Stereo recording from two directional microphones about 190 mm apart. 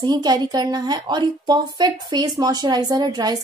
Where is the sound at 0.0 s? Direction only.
20° right (ahead or behind).